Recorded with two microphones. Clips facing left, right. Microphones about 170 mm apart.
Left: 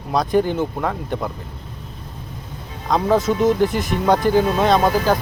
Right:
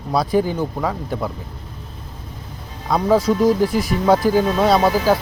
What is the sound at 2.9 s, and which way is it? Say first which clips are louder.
Speech: right 1 dB; centre (ahead or behind).